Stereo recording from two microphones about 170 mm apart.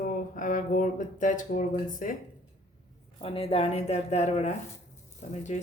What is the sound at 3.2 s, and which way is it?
Speech, 35° left (ahead or behind).